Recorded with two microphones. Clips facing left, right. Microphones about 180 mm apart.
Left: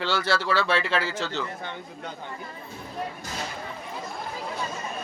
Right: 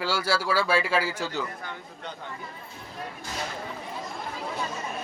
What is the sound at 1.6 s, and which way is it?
Speech, 25° left (ahead or behind).